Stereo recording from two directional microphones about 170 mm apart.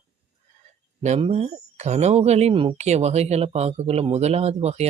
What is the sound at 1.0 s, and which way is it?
Speech, 40° right (ahead or behind).